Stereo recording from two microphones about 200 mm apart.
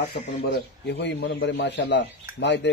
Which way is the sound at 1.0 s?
60° left (ahead or behind).